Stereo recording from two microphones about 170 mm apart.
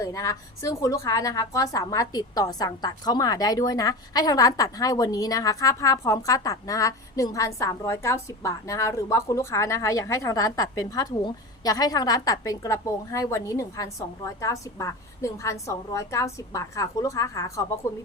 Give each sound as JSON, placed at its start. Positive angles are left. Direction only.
{"t": 0.0, "sound": "a woman's voice", "side_deg": 20}